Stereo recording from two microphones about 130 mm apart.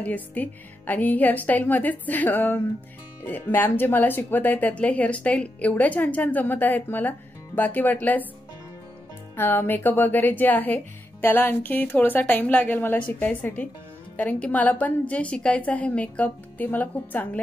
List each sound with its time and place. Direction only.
0.0 s speech: 10° left (ahead or behind)
9.4 s speech: 15° left (ahead or behind)